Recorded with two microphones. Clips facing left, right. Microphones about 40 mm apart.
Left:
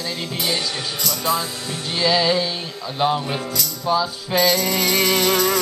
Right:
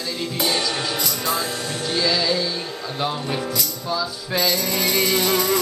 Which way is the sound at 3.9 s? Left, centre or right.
Left.